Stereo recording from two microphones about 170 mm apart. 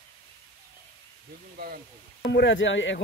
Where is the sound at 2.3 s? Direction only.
90° left.